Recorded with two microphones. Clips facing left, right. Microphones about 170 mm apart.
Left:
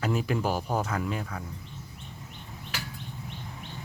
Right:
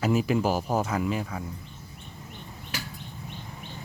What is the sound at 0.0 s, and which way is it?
Speech, 5° right (ahead or behind).